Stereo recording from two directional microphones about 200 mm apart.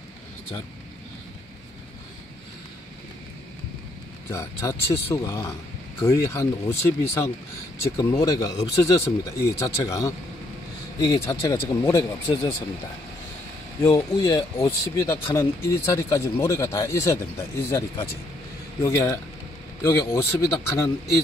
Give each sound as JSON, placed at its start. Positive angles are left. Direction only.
{"t": 4.3, "sound": "a man's voice", "side_deg": 15}
{"t": 13.8, "sound": "a man's voice", "side_deg": 15}